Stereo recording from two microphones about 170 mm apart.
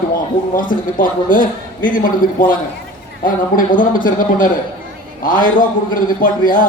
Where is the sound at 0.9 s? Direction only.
50° left (ahead or behind).